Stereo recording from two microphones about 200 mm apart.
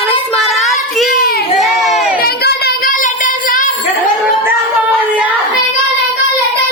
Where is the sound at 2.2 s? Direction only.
50° left (ahead or behind).